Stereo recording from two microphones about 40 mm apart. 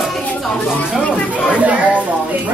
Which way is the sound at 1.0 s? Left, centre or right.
Left.